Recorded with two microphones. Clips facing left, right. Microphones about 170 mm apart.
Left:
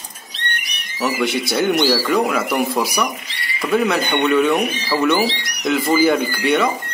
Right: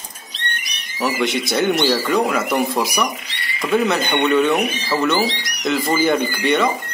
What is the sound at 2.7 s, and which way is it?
Speech, 10° right (ahead or behind).